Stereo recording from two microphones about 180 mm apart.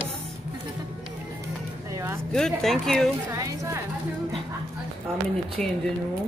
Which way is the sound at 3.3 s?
15° right (ahead or behind).